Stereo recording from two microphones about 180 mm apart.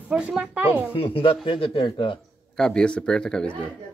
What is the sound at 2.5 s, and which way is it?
Speech, 5° left (ahead or behind).